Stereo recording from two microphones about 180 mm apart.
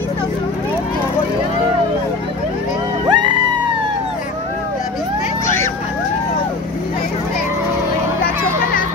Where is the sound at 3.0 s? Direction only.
25° right (ahead or behind).